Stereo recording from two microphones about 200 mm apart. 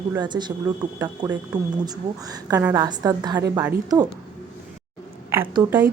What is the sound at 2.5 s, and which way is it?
Speech, 15° right (ahead or behind).